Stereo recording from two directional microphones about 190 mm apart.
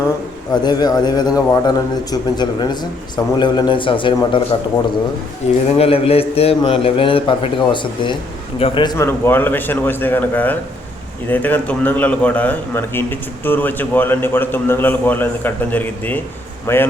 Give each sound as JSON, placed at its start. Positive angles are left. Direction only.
{"t": 0.5, "sound": "a man's voice", "side_deg": 20}
{"t": 5.7, "sound": "a man's voice", "side_deg": 30}